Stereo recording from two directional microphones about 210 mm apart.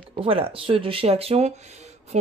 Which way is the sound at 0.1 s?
25° right (ahead or behind).